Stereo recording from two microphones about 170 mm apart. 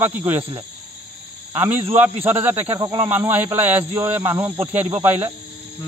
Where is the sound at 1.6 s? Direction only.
10° right (ahead or behind).